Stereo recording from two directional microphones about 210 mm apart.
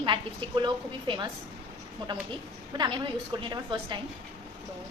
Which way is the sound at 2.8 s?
25° right (ahead or behind).